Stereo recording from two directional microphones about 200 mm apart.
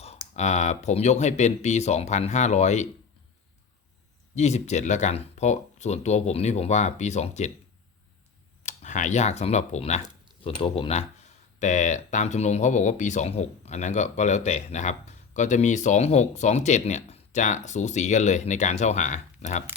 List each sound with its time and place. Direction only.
0.0 s speech: 35° left (ahead or behind)
4.4 s speech: 35° left (ahead or behind)
8.6 s speech: 35° left (ahead or behind)